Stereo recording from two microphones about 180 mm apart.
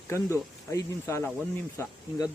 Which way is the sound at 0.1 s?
15° left (ahead or behind).